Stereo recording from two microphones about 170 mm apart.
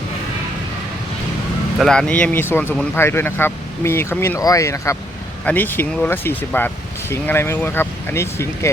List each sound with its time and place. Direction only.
1.8 s speech: 5° left (ahead or behind)